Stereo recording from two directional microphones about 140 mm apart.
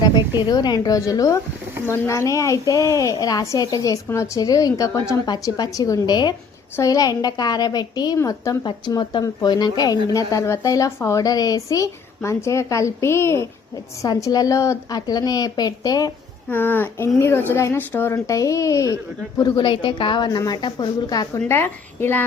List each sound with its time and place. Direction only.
0.0 s a woman's voice: 30° left (ahead or behind)
16.5 s a woman's voice: 15° left (ahead or behind)
21.4 s a woman's voice: 15° left (ahead or behind)